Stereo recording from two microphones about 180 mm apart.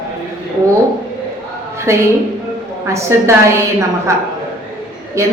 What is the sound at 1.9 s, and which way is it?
A woman's voice, 15° right (ahead or behind).